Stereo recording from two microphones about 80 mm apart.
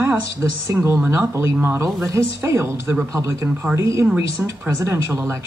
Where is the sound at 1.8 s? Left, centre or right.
Right.